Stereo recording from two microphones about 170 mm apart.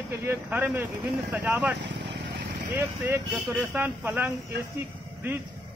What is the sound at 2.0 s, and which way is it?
Vehicle, 90° right.